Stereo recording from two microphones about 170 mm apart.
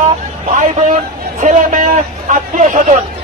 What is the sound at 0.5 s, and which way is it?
Vehicle, 45° right (ahead or behind).